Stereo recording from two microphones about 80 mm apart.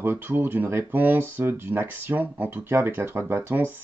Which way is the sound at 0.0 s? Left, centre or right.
Right.